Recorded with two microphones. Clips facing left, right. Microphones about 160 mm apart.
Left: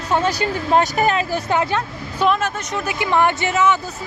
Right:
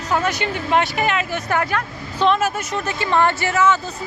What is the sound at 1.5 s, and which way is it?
A woman's voice, 20° left (ahead or behind).